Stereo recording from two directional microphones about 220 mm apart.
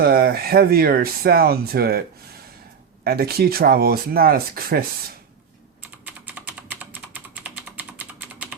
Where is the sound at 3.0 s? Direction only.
45° right (ahead or behind).